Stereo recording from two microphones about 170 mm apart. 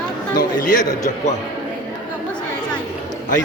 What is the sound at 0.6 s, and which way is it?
Speech, 50° left (ahead or behind).